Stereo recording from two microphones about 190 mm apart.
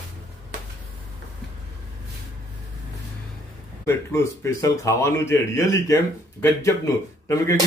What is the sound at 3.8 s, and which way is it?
Speech, 15° left (ahead or behind).